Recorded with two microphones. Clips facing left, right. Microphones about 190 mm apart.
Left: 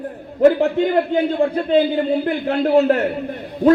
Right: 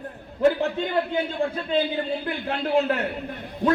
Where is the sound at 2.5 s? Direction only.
40° left (ahead or behind).